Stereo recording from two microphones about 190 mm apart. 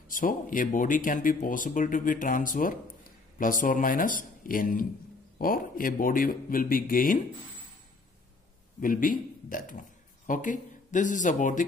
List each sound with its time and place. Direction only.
0.1 s speech: 45° left (ahead or behind)
8.8 s a man's voice: 45° left (ahead or behind)